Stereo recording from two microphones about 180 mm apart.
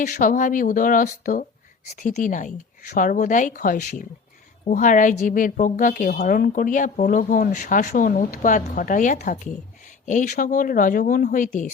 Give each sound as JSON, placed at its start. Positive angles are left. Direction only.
{"t": 0.0, "sound": "speech", "side_deg": 45}